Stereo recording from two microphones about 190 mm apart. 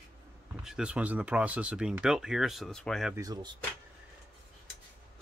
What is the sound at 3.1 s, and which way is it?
Speech, 20° right (ahead or behind).